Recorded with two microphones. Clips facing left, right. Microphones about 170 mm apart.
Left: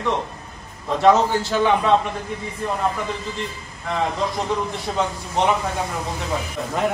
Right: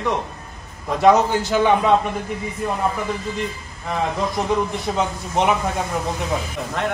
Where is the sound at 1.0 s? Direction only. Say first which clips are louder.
Right 1 dB; 20° right (ahead or behind).